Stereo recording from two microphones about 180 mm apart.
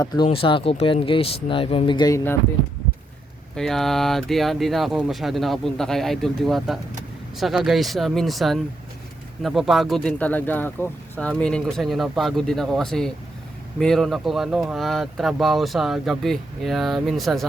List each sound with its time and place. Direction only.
0.0 s speech: 20° left (ahead or behind)
3.5 s speech: centre (ahead or behind)